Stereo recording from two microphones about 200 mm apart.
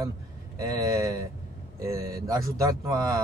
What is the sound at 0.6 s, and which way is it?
Speech, 15° right (ahead or behind).